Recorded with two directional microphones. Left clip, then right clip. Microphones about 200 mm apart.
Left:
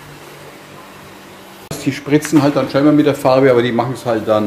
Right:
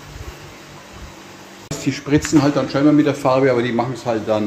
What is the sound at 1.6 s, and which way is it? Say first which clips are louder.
Speech: left 3 dB; 5° left (ahead or behind).